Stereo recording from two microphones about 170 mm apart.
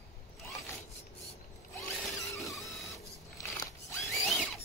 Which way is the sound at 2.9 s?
20° left (ahead or behind).